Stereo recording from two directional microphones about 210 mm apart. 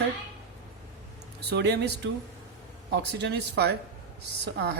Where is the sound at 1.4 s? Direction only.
50° right (ahead or behind).